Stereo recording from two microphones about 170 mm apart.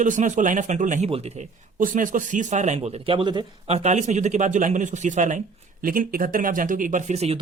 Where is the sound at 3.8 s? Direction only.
45° right (ahead or behind).